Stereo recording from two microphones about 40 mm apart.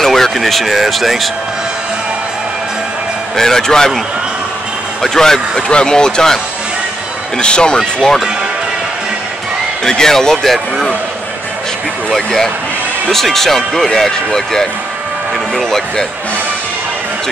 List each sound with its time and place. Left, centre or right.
0.0 s speech: centre
3.3 s speech: centre
5.0 s speech: centre
5.6 s speech: left
9.8 s speech: centre
12.1 s speech: centre